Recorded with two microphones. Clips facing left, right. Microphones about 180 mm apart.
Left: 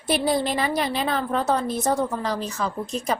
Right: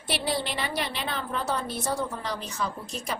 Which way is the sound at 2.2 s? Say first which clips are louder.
Left 5 dB; 90° left.